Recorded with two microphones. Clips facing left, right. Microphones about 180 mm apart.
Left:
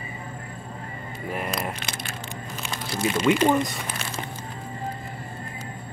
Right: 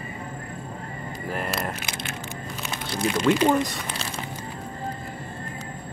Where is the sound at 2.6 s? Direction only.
5° left (ahead or behind).